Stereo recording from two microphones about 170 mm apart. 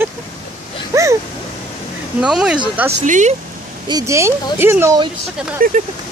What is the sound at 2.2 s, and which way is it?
Speech, 5° right (ahead or behind).